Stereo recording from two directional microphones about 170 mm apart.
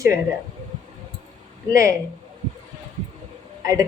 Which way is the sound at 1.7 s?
20° right (ahead or behind).